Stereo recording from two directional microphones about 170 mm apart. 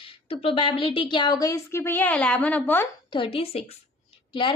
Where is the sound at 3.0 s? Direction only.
30° left (ahead or behind).